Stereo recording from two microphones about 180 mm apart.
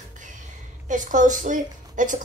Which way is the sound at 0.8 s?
45° right (ahead or behind).